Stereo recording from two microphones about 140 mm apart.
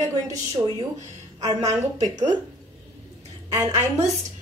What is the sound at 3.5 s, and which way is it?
Speech, 25° right (ahead or behind).